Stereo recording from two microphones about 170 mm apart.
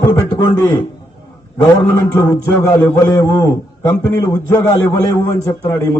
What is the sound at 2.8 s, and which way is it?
A man's voice, 20° left (ahead or behind).